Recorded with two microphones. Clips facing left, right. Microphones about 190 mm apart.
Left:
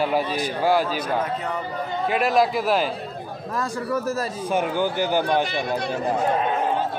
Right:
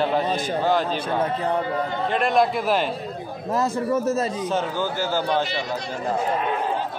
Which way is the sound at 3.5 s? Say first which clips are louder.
Right 4 dB; 25° right (ahead or behind).